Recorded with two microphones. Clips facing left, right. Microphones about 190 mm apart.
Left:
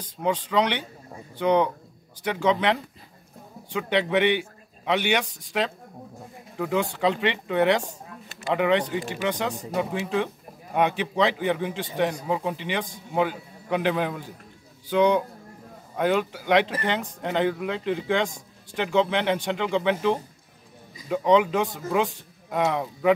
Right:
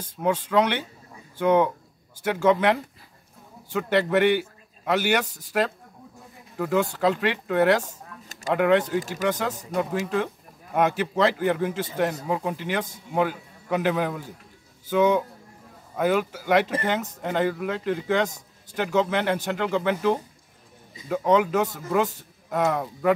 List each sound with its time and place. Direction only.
0.0 s a man's voice: 10° right (ahead or behind)
3.7 s a man's voice: 5° right (ahead or behind)
8.3 s a sound: 40° right (ahead or behind)
8.5 s a man's voice: 5° right (ahead or behind)